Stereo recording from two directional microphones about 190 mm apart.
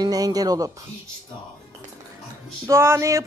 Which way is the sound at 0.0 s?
20° right (ahead or behind).